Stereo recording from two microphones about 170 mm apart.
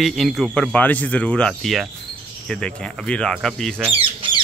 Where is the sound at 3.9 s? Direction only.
30° right (ahead or behind).